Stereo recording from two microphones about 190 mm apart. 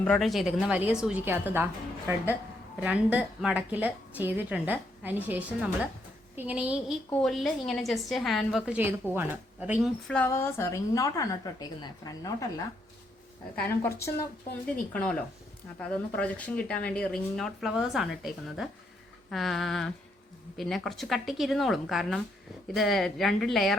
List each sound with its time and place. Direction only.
0.0 s a woman's voice: 5° left (ahead or behind)
2.8 s a woman's voice: 5° right (ahead or behind)
10.1 s a woman's voice: 10° left (ahead or behind)